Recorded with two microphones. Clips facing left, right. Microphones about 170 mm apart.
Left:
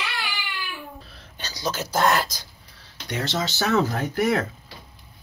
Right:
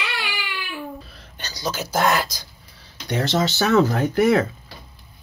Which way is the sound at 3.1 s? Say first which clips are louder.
Right 5 dB; 35° right (ahead or behind).